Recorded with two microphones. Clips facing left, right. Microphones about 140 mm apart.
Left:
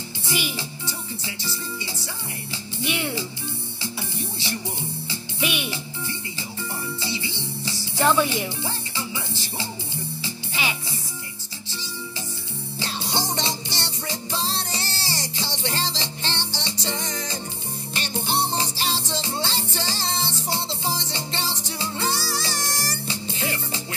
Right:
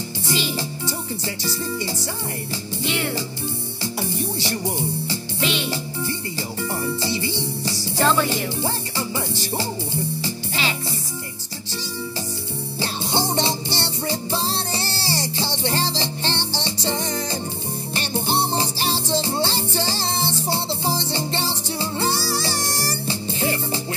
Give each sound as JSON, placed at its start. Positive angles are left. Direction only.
{"t": 0.3, "sound": "music", "side_deg": 15}
{"t": 0.6, "sound": "music", "side_deg": -40}
{"t": 2.8, "sound": "music", "side_deg": 15}
{"t": 4.4, "sound": "speech", "side_deg": -40}
{"t": 5.4, "sound": "music", "side_deg": 15}
{"t": 7.0, "sound": "music", "side_deg": -45}
{"t": 8.0, "sound": "speech", "side_deg": 15}
{"t": 8.6, "sound": "music", "side_deg": -40}
{"t": 10.5, "sound": "music", "side_deg": 15}
{"t": 12.7, "sound": "music", "side_deg": -30}